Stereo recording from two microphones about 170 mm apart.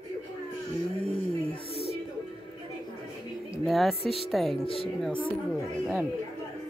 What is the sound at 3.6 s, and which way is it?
Speech, centre (ahead or behind).